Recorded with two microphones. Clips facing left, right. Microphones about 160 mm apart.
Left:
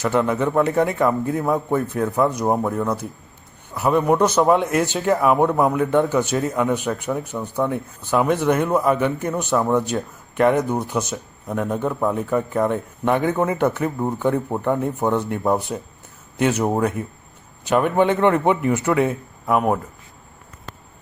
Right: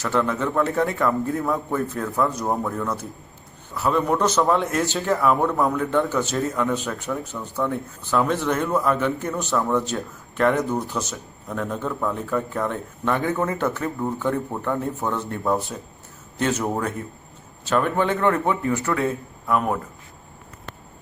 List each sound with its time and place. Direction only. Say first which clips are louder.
0.0 s speech: left 3 dB; 15° left (ahead or behind)